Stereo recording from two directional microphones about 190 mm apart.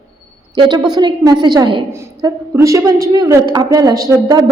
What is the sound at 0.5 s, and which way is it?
A woman's voice, 20° right (ahead or behind).